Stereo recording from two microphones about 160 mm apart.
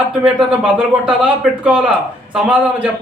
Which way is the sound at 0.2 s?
5° right (ahead or behind).